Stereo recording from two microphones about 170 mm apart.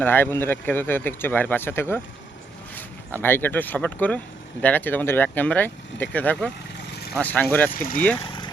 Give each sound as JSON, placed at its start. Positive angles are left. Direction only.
{"t": 0.0, "sound": "speech", "side_deg": 10}
{"t": 3.1, "sound": "speech", "side_deg": 10}
{"t": 8.2, "sound": "a sound", "side_deg": 25}